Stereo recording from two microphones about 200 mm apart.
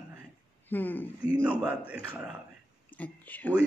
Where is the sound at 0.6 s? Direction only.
10° left (ahead or behind).